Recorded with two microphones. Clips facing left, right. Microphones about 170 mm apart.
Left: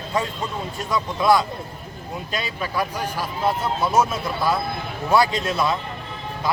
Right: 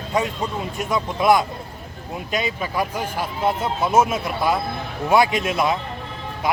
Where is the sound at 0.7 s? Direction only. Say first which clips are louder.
Even; 20° right (ahead or behind).